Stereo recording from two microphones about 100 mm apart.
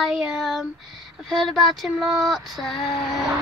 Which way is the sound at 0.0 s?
5° right (ahead or behind).